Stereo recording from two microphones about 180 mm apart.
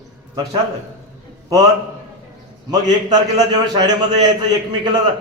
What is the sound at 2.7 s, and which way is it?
Speech, 20° right (ahead or behind).